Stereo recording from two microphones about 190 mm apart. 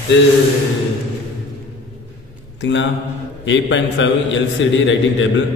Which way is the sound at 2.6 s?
75° left (ahead or behind).